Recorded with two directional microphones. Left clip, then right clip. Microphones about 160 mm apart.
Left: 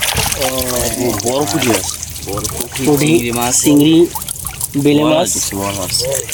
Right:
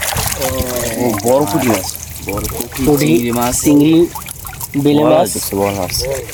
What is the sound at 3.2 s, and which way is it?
Speech, 85° right.